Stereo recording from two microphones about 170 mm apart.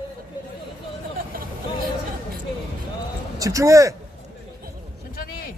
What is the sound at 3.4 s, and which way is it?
Speech, 20° right (ahead or behind).